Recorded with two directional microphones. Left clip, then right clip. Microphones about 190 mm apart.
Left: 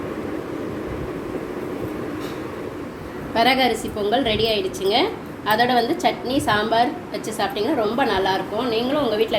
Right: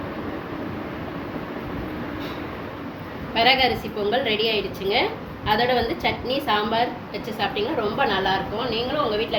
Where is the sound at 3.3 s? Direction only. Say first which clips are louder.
Left 1 dB; 40° left (ahead or behind).